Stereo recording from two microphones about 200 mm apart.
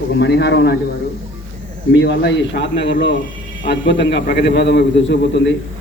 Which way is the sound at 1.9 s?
65° left (ahead or behind).